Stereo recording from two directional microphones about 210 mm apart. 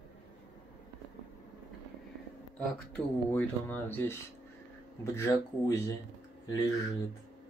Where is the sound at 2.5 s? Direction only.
5° left (ahead or behind).